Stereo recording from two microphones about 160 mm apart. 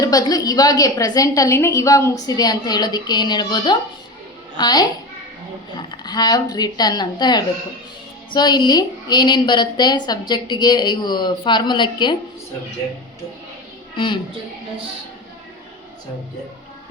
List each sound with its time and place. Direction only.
0.0 s a woman's voice: 25° left (ahead or behind)
13.9 s a woman's voice: 30° left (ahead or behind)